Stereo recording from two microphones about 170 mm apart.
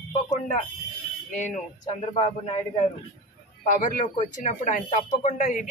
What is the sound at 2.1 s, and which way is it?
Speech, 40° left (ahead or behind).